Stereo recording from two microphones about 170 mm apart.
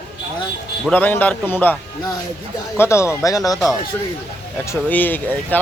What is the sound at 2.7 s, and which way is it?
Speech, 15° left (ahead or behind).